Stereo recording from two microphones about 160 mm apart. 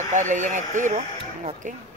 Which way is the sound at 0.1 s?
50° right (ahead or behind).